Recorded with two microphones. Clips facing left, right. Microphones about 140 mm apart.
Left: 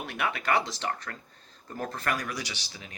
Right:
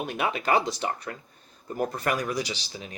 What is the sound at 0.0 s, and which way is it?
Speech, 20° right (ahead or behind).